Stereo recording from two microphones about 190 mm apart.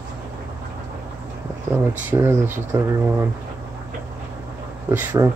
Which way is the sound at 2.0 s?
10° right (ahead or behind).